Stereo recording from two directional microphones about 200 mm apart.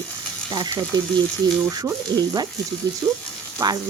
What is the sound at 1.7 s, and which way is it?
Speech, 20° right (ahead or behind).